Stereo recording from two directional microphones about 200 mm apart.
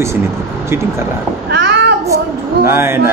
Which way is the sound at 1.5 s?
60° right (ahead or behind).